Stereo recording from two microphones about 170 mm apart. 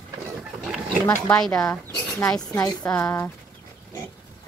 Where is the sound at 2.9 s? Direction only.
10° left (ahead or behind).